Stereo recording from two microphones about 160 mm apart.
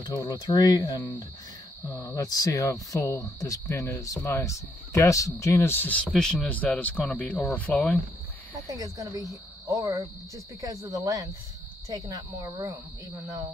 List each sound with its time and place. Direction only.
0.0 s speech: 25° left (ahead or behind); by 8.0 s 10° left (ahead or behind)
8.7 s speech: 20° right (ahead or behind)